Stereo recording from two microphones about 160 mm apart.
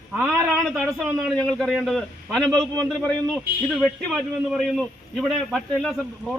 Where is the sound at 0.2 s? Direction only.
Centre (ahead or behind).